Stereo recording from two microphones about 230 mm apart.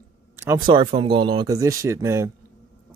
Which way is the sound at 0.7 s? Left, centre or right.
Right.